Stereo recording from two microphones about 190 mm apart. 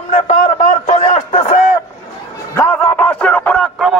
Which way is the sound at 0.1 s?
45° left (ahead or behind).